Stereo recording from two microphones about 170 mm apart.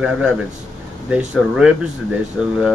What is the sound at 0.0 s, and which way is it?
Speech, 5° right (ahead or behind).